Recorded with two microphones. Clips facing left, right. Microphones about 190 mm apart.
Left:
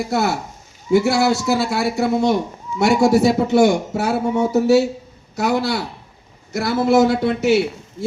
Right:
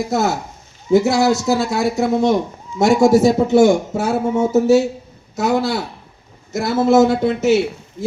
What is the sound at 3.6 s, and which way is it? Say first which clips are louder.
A man's voice: right 2 dB; 20° right (ahead or behind).